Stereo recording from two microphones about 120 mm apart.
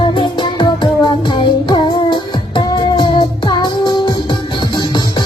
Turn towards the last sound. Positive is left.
turn(degrees=40)  # may be behind; listen again after turning